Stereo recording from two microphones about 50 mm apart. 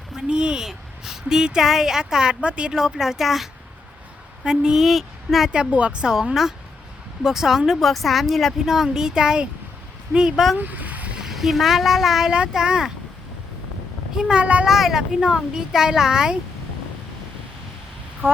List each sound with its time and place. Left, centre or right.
0.2 s a woman's voice: centre
3.0 s speech: centre
5.5 s speech: right
7.2 s a woman's voice: centre
10.6 s a sound: right
11.2 s speech: centre
12.3 s a woman's voice: centre
14.2 s speech: centre
14.7 s a woman's voice: centre